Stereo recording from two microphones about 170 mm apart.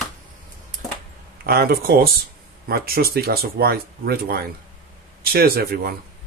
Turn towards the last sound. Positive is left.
turn(degrees=-65)  # may be behind; listen again after turning